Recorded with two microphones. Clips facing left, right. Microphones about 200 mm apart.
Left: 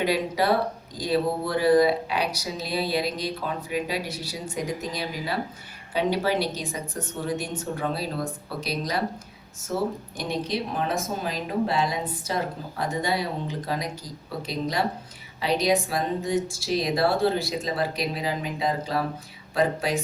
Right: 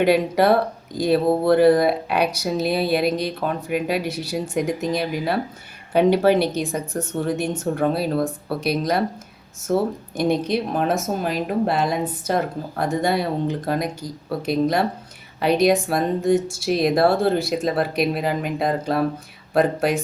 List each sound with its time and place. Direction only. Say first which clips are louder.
0.0 s speech: right 7 dB; 60° right (ahead or behind)
9.7 s speech: right 6 dB; 55° right (ahead or behind)